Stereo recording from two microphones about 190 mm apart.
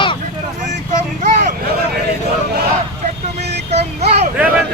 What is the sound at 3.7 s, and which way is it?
Child singing, 35° right (ahead or behind).